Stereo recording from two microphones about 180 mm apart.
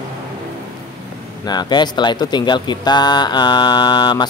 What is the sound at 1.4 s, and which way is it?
Mantra, 25° left (ahead or behind).